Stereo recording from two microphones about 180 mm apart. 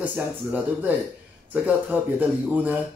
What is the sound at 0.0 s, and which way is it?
Speech, 10° right (ahead or behind).